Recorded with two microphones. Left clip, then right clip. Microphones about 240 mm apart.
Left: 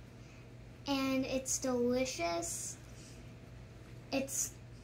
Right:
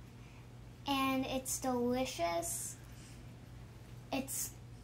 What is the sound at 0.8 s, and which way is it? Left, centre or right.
A child's voice, centre.